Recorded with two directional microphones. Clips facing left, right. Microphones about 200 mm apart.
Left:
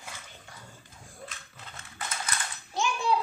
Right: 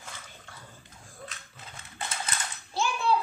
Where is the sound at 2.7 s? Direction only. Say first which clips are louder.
Even; 15° left (ahead or behind).